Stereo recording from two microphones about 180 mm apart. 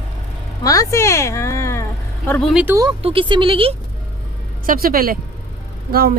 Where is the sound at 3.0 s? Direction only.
30° right (ahead or behind).